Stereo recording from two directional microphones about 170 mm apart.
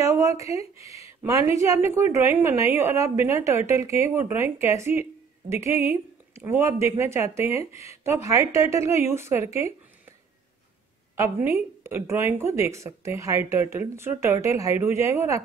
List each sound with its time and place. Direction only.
0.0 s a woman's voice: 20° right (ahead or behind)
11.1 s speech: 15° right (ahead or behind)